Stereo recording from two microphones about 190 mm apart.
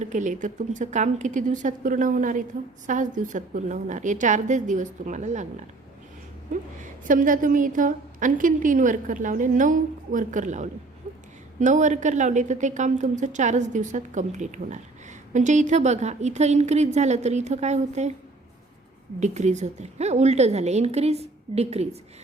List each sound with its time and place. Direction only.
0.0 s a woman's voice: 40° right (ahead or behind)
7.1 s a woman's voice: 45° right (ahead or behind)
11.1 s a sound: 40° right (ahead or behind)
11.6 s a woman's voice: 40° right (ahead or behind)
19.2 s a woman's voice: 40° right (ahead or behind)